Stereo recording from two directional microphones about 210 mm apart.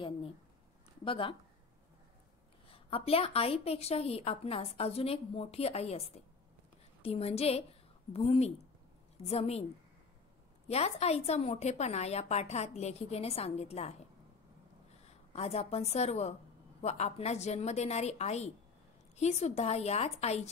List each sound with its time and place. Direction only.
1.0 s speech: 25° left (ahead or behind)
2.7 s a woman's voice: 25° left (ahead or behind)
10.7 s a woman's voice: 30° left (ahead or behind)
15.0 s a woman's voice: 30° left (ahead or behind)